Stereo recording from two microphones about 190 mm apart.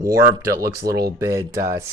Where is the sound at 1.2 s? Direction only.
15° right (ahead or behind).